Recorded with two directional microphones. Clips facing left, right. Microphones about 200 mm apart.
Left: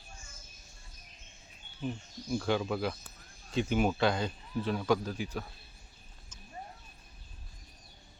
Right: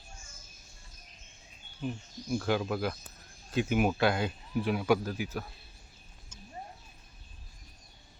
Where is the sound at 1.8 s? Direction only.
5° right (ahead or behind).